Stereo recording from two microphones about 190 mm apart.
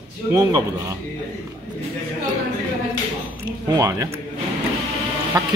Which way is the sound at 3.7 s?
15° right (ahead or behind).